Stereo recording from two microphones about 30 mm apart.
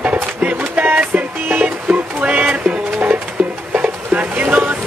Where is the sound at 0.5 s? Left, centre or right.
Right.